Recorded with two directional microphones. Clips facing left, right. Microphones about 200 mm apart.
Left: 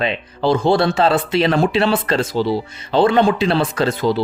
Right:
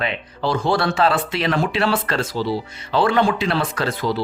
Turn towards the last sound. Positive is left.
turn(degrees=25)  # may be behind; listen again after turning